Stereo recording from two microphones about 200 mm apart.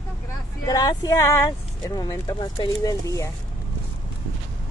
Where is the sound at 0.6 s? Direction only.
20° left (ahead or behind).